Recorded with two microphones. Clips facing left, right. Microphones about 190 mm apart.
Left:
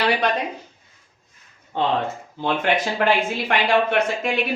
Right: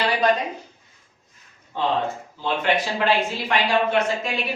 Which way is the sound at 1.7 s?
60° left (ahead or behind).